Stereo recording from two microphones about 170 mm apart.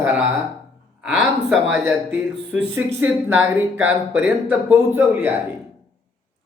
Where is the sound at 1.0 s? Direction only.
5° right (ahead or behind).